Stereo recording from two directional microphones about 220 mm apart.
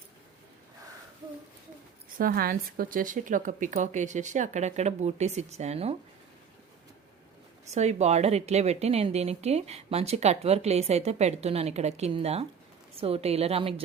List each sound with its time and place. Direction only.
2.1 s a woman's voice: 40° right (ahead or behind)
7.7 s a woman's voice: 30° right (ahead or behind)